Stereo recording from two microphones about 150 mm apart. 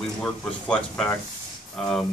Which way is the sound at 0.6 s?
5° left (ahead or behind).